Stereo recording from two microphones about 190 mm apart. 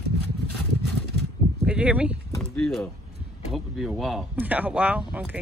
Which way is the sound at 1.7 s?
5° right (ahead or behind).